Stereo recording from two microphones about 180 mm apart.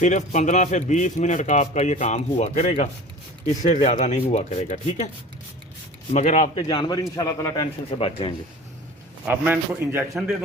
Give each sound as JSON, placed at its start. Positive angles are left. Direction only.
{"t": 0.0, "sound": "a man's voice", "side_deg": 40}
{"t": 6.1, "sound": "a man's voice", "side_deg": 40}
{"t": 6.6, "sound": "a man's voice", "side_deg": 25}
{"t": 7.9, "sound": "a man's voice", "side_deg": 35}
{"t": 9.2, "sound": "a man's voice", "side_deg": -10}